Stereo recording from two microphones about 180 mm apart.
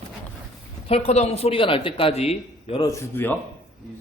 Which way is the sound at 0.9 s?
35° left (ahead or behind).